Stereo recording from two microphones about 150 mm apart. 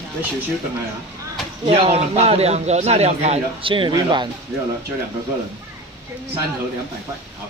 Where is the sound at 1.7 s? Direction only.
45° right (ahead or behind).